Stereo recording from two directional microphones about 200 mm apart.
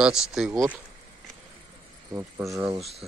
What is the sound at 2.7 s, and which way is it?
Speech, 30° right (ahead or behind).